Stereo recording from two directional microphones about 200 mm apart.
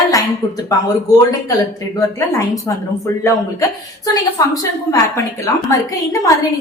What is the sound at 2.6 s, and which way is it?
A woman's voice, 15° left (ahead or behind).